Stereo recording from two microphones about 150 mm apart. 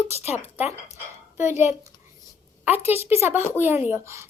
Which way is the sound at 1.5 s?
15° right (ahead or behind).